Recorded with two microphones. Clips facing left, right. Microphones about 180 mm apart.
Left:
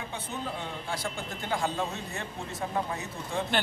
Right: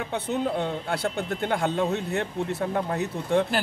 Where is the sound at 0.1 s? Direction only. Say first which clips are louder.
Right 13 dB; 65° right (ahead or behind).